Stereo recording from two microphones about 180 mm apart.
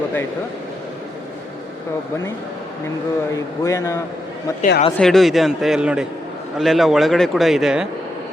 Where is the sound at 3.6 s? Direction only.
15° left (ahead or behind).